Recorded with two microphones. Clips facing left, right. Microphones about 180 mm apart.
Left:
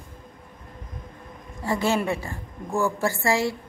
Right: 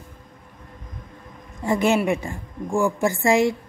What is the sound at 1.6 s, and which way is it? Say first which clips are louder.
A woman's voice: right 4 dB; 20° right (ahead or behind).